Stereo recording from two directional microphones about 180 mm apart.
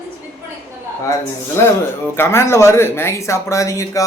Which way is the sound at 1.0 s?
15° left (ahead or behind).